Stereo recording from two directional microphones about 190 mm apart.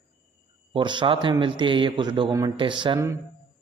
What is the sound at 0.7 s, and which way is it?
A man's voice, 25° right (ahead or behind).